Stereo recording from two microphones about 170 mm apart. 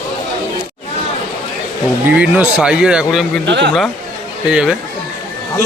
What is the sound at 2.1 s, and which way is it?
Speech, 10° right (ahead or behind).